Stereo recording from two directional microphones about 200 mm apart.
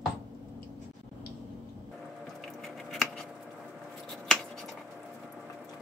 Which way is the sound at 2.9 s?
Centre (ahead or behind).